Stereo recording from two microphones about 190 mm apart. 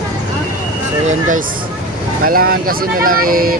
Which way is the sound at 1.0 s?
40° right (ahead or behind).